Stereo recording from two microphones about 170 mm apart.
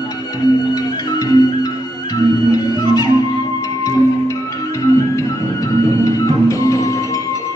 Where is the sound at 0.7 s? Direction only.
20° left (ahead or behind).